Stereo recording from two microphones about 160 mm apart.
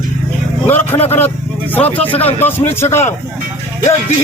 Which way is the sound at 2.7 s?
15° left (ahead or behind).